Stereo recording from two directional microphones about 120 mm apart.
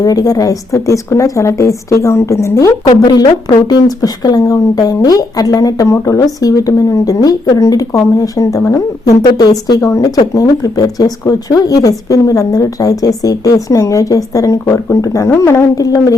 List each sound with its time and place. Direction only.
0.0 s a woman's voice: 30° left (ahead or behind)